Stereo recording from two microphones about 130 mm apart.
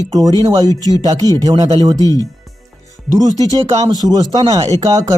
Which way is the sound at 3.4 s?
30° right (ahead or behind).